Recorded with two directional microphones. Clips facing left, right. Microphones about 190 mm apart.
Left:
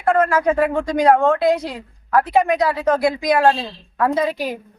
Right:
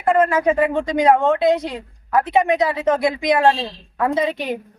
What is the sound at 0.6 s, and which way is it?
Speech, 20° right (ahead or behind).